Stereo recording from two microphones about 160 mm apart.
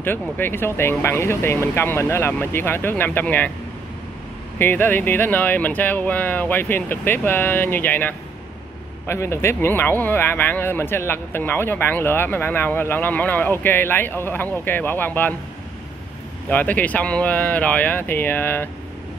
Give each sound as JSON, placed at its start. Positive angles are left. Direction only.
{"t": 0.0, "sound": "speech", "side_deg": 15}
{"t": 4.6, "sound": "speech", "side_deg": 15}
{"t": 16.4, "sound": "speech", "side_deg": 10}